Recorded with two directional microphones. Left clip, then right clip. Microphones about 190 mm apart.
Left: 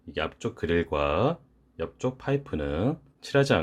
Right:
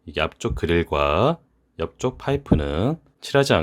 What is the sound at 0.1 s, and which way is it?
Speech, 40° right (ahead or behind).